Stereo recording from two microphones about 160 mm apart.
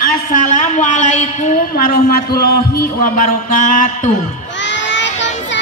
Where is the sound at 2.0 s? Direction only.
70° left (ahead or behind).